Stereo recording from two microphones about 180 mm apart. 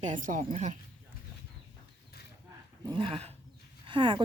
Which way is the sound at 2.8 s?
30° right (ahead or behind).